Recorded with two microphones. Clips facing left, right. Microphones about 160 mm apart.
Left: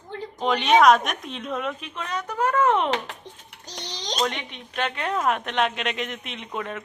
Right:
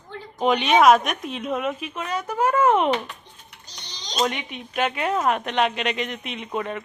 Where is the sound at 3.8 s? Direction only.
90° left.